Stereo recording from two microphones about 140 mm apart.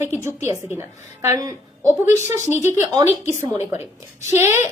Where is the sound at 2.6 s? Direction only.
25° right (ahead or behind).